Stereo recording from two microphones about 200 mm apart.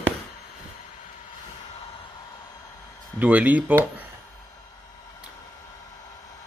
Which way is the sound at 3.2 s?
10° right (ahead or behind).